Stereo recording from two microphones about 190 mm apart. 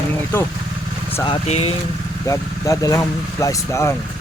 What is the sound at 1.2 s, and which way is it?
Speech, 30° left (ahead or behind).